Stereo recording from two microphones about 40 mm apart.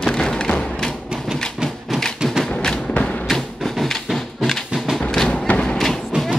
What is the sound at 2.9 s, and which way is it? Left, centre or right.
Music, left.